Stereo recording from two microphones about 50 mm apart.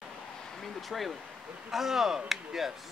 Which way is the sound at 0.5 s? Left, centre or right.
Centre.